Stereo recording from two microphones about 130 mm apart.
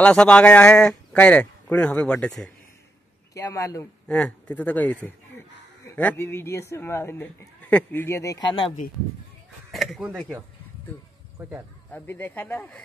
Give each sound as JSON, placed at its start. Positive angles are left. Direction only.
{"t": 0.0, "sound": "speech", "side_deg": 5}
{"t": 3.3, "sound": "speech", "side_deg": 25}
{"t": 4.1, "sound": "speech", "side_deg": 10}
{"t": 9.7, "sound": "speech", "side_deg": 0}
{"t": 11.4, "sound": "speech", "side_deg": -15}
{"t": 11.9, "sound": "speech", "side_deg": 15}